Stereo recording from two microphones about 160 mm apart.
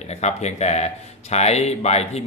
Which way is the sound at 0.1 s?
45° left (ahead or behind).